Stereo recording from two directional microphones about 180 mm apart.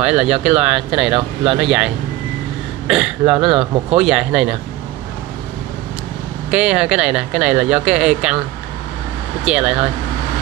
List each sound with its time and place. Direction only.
0.0 s speech: 5° right (ahead or behind)
1.1 s speech: 30° right (ahead or behind)
1.6 s speech: centre (ahead or behind)
2.9 s speech: 5° right (ahead or behind)
3.3 s speech: 30° right (ahead or behind)
4.0 s speech: 5° right (ahead or behind)
6.5 s speech: 5° right (ahead or behind)
9.4 s speech: 5° right (ahead or behind)